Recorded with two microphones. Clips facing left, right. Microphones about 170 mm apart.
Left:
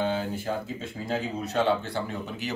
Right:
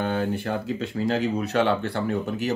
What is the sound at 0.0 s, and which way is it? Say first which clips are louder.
Speech: right 3 dB; 60° right (ahead or behind).